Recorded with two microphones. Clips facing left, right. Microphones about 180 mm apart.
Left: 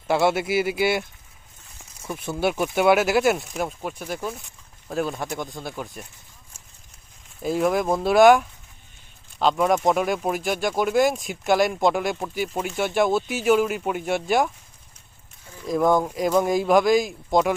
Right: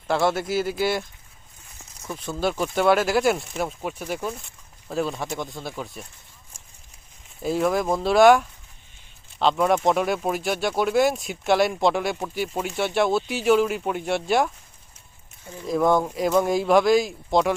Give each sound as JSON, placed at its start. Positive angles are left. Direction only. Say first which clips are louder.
{"t": 0.1, "sound": "speech", "louder": "left 2 dB", "side_deg": 10}
{"t": 2.2, "sound": "speech", "louder": "left 1 dB", "side_deg": 10}
{"t": 7.4, "sound": "speech", "louder": "left 1 dB", "side_deg": 0}
{"t": 15.6, "sound": "speech", "louder": "even", "side_deg": 0}